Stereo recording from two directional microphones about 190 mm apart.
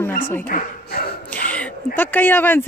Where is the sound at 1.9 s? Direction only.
10° left (ahead or behind).